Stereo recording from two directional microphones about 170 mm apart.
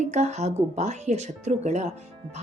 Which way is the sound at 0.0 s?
40° right (ahead or behind).